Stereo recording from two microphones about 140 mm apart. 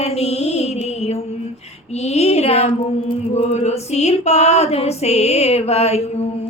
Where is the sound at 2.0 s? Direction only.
50° left (ahead or behind).